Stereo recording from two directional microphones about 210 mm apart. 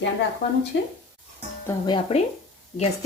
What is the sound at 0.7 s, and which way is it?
Speech, 55° left (ahead or behind).